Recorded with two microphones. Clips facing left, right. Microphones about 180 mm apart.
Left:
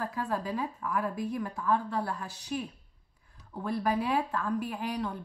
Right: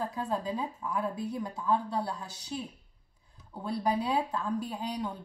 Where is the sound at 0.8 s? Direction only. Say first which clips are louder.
Left 1 dB; 25° right (ahead or behind).